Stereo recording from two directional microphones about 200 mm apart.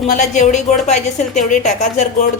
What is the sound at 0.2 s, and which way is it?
A woman's voice, 35° left (ahead or behind).